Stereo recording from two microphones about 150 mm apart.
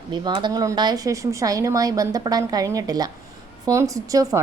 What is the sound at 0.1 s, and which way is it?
A woman's voice, 30° right (ahead or behind).